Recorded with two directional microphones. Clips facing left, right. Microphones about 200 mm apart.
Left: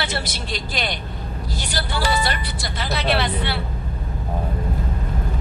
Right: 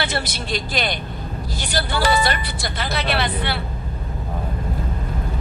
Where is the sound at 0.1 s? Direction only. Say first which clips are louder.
Right 3 dB; 55° right (ahead or behind).